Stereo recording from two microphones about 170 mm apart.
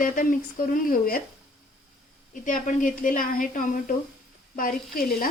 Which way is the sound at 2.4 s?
50° left (ahead or behind).